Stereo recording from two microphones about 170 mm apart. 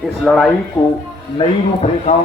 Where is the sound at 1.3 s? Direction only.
40° left (ahead or behind).